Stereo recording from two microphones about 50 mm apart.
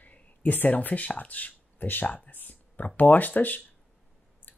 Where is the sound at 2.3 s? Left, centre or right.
Left.